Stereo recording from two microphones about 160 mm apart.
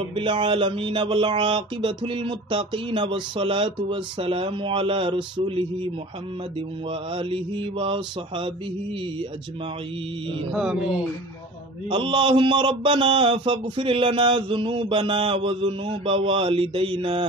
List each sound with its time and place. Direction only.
0.1 s speech: 30° right (ahead or behind)
6.9 s speech: 35° right (ahead or behind)
10.5 s speech: 5° right (ahead or behind)
11.9 s speech: 30° right (ahead or behind)